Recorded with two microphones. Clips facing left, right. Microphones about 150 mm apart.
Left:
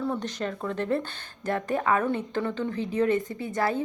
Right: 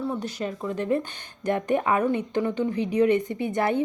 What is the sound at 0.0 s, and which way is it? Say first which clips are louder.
A woman's voice: right 1 dB; 5° right (ahead or behind).